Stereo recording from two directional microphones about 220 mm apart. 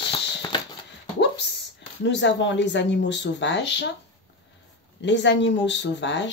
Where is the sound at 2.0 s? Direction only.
55° left (ahead or behind).